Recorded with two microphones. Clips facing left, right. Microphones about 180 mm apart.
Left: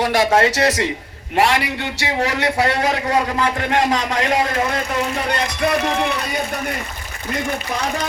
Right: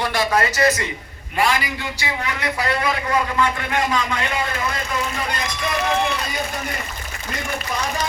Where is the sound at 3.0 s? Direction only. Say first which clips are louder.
Left 2 dB; 35° left (ahead or behind).